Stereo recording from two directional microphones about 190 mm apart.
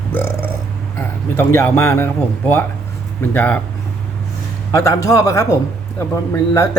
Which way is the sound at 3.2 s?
10° left (ahead or behind).